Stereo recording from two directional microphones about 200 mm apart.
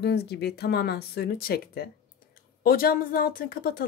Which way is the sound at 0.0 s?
55° left (ahead or behind).